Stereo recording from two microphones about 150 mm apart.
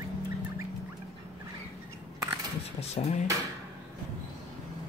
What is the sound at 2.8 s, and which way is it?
Speech, 45° left (ahead or behind).